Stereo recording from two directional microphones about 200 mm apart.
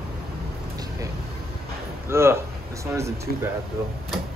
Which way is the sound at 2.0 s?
10° right (ahead or behind).